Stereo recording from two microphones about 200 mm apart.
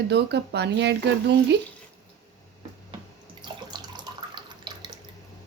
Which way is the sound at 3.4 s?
20° right (ahead or behind).